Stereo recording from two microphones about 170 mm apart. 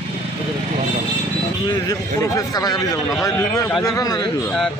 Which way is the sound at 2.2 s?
20° left (ahead or behind).